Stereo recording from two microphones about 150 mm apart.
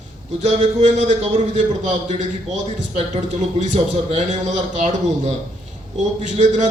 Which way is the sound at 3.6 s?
50° right (ahead or behind).